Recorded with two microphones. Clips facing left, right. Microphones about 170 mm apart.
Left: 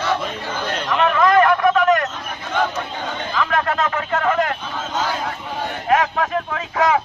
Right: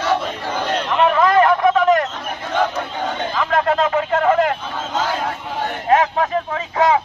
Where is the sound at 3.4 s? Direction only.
25° right (ahead or behind).